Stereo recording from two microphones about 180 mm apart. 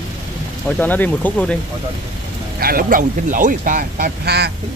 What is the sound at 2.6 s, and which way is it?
Speech, 55° right (ahead or behind).